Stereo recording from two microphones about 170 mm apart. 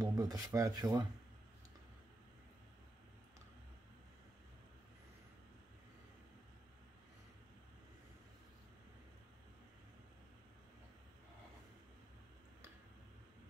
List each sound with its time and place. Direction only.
0.0 s speech: 20° right (ahead or behind)